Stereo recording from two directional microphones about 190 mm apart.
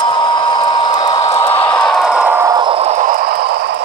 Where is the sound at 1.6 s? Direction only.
5° left (ahead or behind); by 3.7 s 55° right (ahead or behind).